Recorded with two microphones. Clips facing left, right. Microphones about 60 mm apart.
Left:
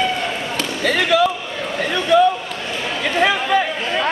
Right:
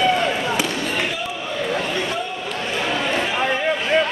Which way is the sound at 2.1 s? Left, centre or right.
Left.